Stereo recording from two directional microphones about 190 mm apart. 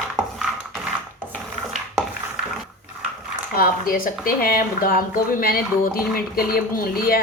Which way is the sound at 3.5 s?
50° left (ahead or behind).